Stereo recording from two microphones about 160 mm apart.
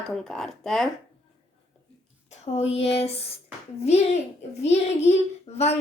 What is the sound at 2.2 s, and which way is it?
A child's voice, 40° left (ahead or behind).